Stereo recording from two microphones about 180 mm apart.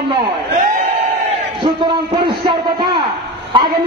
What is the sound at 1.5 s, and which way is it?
A man's voice, 25° right (ahead or behind).